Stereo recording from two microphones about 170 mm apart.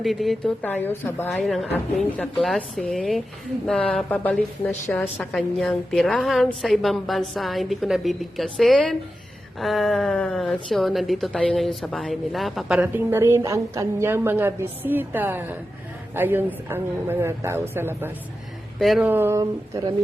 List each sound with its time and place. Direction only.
0.0 s a man's voice: centre (ahead or behind)
18.8 s speech: centre (ahead or behind)
19.0 s a man's voice: 15° right (ahead or behind)